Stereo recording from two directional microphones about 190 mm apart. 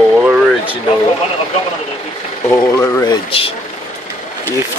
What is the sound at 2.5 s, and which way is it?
Speech, 15° left (ahead or behind).